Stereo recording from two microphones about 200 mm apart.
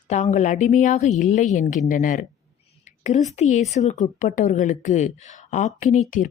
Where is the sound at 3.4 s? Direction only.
35° left (ahead or behind).